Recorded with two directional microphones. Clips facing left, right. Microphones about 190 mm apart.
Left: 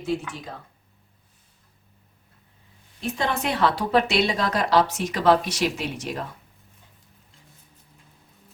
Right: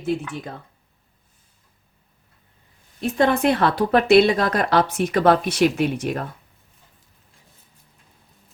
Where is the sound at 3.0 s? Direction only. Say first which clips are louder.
Right 8 dB; 55° right (ahead or behind).